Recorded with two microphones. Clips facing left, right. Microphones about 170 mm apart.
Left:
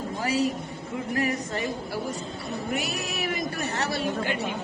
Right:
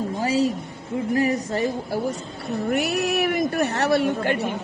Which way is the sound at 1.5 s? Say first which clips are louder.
Right 6 dB; 45° right (ahead or behind).